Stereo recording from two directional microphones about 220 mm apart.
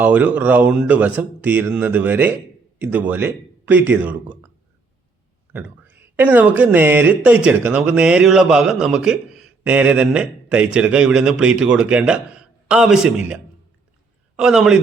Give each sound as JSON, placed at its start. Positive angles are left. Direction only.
{"t": 0.0, "sound": "speech", "side_deg": -5}
{"t": 5.5, "sound": "speech", "side_deg": -10}